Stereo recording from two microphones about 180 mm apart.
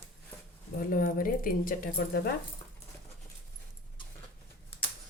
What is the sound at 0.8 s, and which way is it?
Speech, 50° left (ahead or behind).